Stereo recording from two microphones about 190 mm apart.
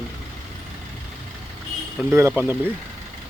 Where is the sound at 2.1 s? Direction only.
10° right (ahead or behind).